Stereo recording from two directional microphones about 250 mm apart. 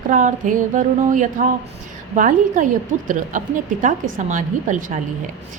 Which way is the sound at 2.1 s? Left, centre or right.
Right.